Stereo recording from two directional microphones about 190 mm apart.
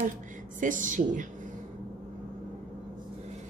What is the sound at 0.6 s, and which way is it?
Speech, 45° right (ahead or behind).